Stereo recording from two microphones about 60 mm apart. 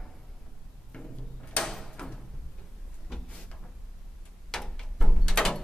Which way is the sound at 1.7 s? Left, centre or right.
Centre.